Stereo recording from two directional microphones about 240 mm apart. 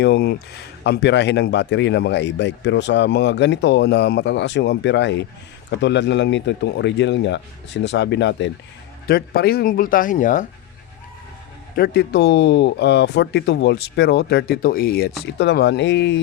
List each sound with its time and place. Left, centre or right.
0.0 s speech: left
11.8 s speech: left